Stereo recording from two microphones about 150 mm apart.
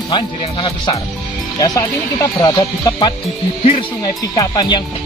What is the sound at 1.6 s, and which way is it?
Speech, 25° left (ahead or behind).